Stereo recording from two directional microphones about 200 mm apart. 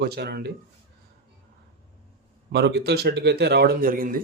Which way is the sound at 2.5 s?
55° right (ahead or behind).